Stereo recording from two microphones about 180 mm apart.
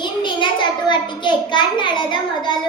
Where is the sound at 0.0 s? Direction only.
25° left (ahead or behind).